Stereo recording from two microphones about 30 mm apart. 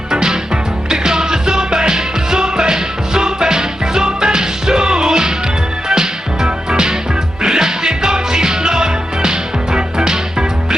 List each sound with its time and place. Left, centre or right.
0.1 s music: right